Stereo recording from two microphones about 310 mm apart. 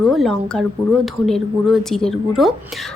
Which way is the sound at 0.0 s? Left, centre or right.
Centre.